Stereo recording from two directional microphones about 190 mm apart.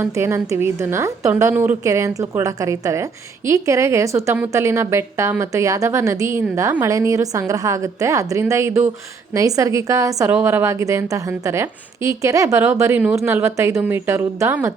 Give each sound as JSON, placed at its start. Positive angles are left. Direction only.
{"t": 0.0, "sound": "a woman's voice", "side_deg": -15}